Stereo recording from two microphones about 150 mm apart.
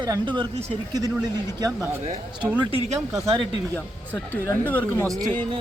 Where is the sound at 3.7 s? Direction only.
15° left (ahead or behind).